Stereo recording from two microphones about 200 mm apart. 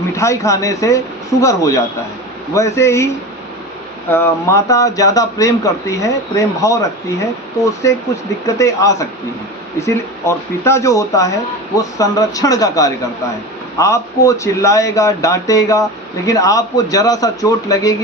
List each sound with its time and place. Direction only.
0.2 s speech: 15° left (ahead or behind)
4.1 s speech: 15° left (ahead or behind)